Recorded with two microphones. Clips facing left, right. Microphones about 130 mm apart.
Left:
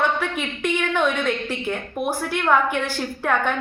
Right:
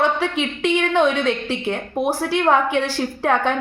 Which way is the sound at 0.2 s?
85° right.